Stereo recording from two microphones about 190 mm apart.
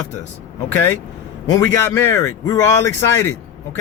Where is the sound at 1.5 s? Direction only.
15° left (ahead or behind).